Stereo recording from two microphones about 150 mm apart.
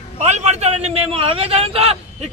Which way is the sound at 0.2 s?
50° right (ahead or behind).